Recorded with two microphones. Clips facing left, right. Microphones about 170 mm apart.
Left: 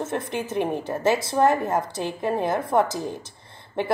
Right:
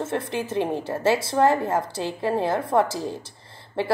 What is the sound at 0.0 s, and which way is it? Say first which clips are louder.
A woman's voice: right 1 dB; 30° right (ahead or behind).